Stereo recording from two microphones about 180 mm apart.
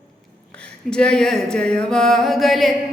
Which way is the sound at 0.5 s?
5° left (ahead or behind).